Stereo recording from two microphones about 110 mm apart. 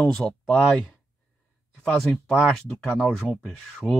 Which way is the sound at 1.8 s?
5° left (ahead or behind).